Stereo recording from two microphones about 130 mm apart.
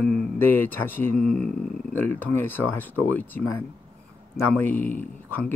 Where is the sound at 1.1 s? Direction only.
5° left (ahead or behind).